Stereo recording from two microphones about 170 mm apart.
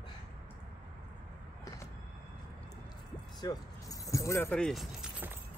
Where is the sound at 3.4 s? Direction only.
20° left (ahead or behind); by 5.3 s 5° right (ahead or behind).